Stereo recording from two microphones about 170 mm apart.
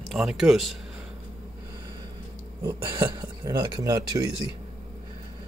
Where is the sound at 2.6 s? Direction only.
15° right (ahead or behind).